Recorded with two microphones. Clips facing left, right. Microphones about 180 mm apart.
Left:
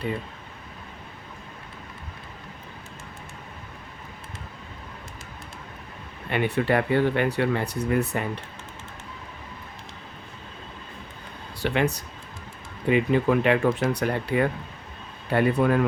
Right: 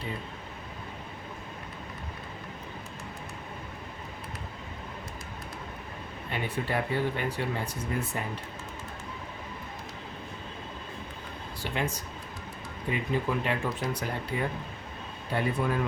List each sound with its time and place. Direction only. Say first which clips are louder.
6.3 s speech: left 8 dB; 70° left (ahead or behind)
11.6 s a man's voice: left 8 dB; 70° left (ahead or behind)